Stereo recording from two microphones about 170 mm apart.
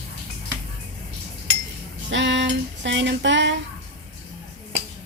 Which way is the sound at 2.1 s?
90° right.